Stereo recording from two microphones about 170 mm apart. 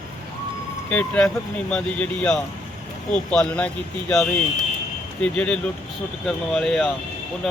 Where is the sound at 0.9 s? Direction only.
10° left (ahead or behind).